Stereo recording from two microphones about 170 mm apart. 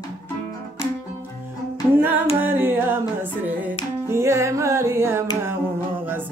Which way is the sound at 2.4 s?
10° right (ahead or behind).